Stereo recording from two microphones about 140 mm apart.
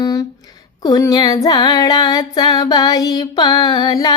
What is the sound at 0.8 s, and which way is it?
Music, 25° left (ahead or behind).